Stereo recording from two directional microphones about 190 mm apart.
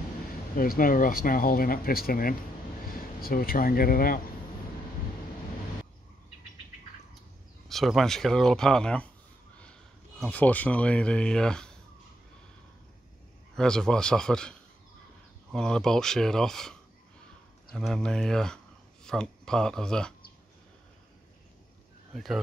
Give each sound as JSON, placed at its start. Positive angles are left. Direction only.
{"t": 0.6, "sound": "speech", "side_deg": 45}
{"t": 7.6, "sound": "speech", "side_deg": 0}
{"t": 9.6, "sound": "a sound", "side_deg": 5}
{"t": 10.3, "sound": "speech", "side_deg": 10}
{"t": 13.6, "sound": "speech", "side_deg": 5}
{"t": 22.1, "sound": "speech", "side_deg": 0}